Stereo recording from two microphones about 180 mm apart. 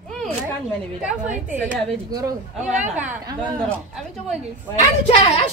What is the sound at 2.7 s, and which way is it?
Speech, 40° right (ahead or behind).